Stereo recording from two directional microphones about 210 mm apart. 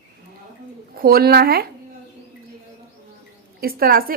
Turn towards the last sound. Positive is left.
turn(degrees=-45)  # may be behind; listen again after turning